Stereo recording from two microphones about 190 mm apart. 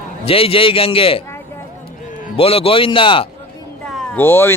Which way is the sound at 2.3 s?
30° left (ahead or behind).